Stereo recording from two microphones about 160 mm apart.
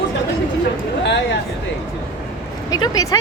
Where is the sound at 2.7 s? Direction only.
25° left (ahead or behind).